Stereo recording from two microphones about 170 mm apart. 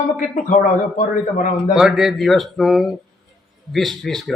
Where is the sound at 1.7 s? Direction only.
Centre (ahead or behind).